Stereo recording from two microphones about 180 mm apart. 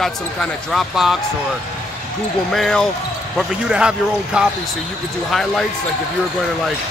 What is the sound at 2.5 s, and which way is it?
Speech, centre (ahead or behind).